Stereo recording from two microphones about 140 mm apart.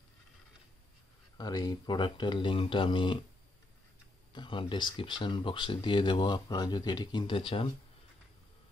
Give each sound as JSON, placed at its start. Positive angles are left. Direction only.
{"t": 1.4, "sound": "speech", "side_deg": 30}
{"t": 4.3, "sound": "speech", "side_deg": 35}